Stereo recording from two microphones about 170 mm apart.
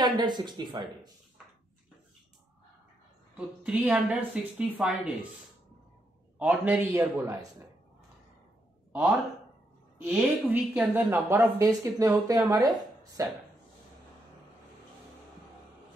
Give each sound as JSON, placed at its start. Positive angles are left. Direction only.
{"t": 0.0, "sound": "a woman's voice", "side_deg": -25}
{"t": 3.3, "sound": "a woman's voice", "side_deg": -10}
{"t": 6.3, "sound": "a woman's voice", "side_deg": -10}
{"t": 10.0, "sound": "a woman's voice", "side_deg": -5}